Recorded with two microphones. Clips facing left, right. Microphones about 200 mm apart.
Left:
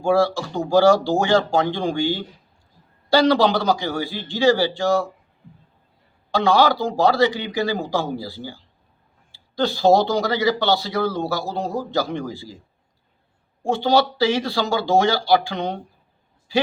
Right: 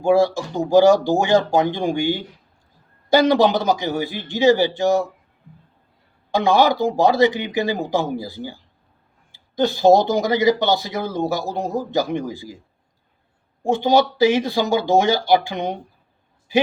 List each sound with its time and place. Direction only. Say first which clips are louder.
0.0 s speech: right 2 dB; 20° right (ahead or behind)
6.3 s speech: right 1 dB; 20° right (ahead or behind)
13.6 s a man's voice: right 2 dB; 20° right (ahead or behind)